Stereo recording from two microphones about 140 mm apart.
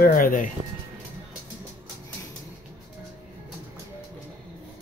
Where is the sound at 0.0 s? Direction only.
90° left.